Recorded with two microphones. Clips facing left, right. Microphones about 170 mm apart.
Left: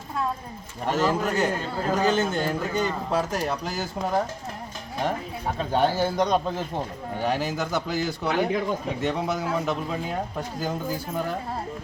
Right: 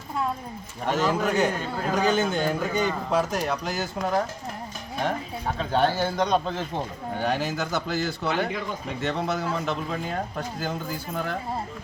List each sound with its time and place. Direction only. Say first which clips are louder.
0.9 s speech: even; 5° left (ahead or behind)
5.7 s a man's voice: left 1 dB; 10° left (ahead or behind)